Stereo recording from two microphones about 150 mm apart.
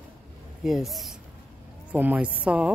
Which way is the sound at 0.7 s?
Centre (ahead or behind).